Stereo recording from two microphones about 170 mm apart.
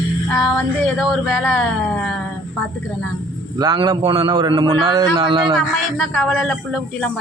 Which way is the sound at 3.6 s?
25° right (ahead or behind).